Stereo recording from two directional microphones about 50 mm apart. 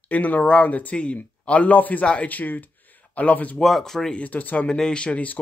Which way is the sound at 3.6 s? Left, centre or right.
Centre.